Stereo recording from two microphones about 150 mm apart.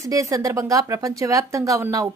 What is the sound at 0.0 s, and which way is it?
Speech, 20° right (ahead or behind).